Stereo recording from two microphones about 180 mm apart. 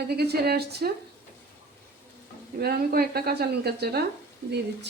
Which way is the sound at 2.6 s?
60° right (ahead or behind).